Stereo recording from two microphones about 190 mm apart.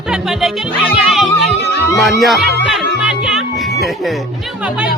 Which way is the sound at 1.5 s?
60° left (ahead or behind).